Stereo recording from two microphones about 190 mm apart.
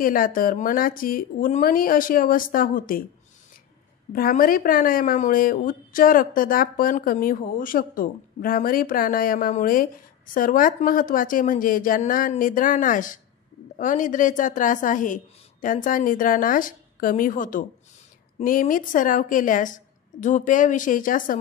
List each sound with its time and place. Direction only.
0.0 s speech: 45° left (ahead or behind)
4.1 s speech: 50° left (ahead or behind)